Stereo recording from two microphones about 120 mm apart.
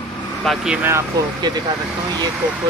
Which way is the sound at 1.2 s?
30° right (ahead or behind).